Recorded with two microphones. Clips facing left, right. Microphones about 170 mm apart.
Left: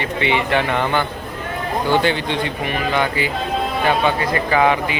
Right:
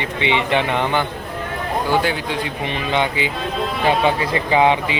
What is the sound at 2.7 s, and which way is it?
Speech, 20° right (ahead or behind).